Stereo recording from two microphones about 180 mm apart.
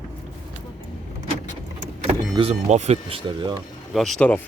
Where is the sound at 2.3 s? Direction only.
35° right (ahead or behind).